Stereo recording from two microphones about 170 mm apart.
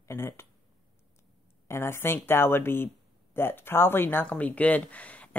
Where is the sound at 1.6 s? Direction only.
15° left (ahead or behind).